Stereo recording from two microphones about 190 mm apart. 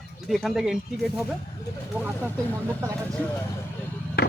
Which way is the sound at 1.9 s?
15° left (ahead or behind).